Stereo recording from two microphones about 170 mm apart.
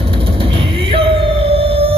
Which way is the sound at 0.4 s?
30° right (ahead or behind).